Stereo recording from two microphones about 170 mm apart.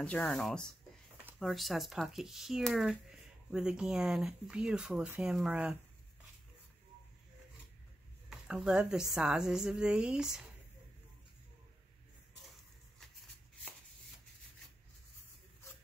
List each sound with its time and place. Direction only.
0.0 s speech: 10° left (ahead or behind)
8.3 s speech: 5° right (ahead or behind)